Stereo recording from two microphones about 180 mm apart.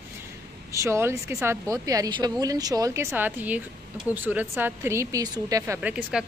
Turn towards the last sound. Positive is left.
turn(degrees=-5)  # may be behind; listen again after turning